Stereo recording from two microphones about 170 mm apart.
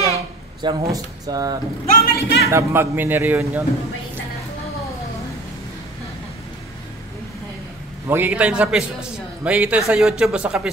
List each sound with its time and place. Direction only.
0.1 s speech: 25° right (ahead or behind)
2.0 s a man's voice: 65° left (ahead or behind)
2.5 s a man's voice: 15° right (ahead or behind)
8.1 s a man's voice: 10° right (ahead or behind)